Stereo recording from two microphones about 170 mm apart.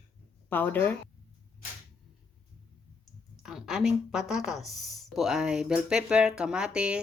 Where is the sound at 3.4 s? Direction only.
Centre (ahead or behind).